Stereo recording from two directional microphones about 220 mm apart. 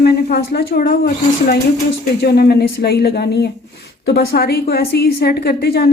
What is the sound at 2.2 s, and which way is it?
Speech, 45° left (ahead or behind).